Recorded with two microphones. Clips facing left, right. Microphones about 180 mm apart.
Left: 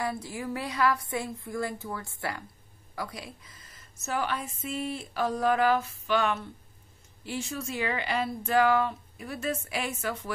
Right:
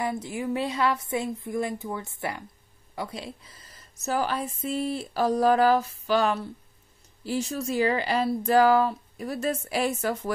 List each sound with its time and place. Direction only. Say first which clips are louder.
0.0 s speech: right 3 dB; 20° right (ahead or behind); by 10.3 s 40° right (ahead or behind)